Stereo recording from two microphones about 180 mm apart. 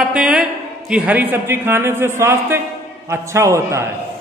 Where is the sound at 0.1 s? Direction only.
5° right (ahead or behind).